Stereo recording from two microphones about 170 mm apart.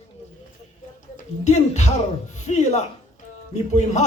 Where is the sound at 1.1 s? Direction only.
45° left (ahead or behind).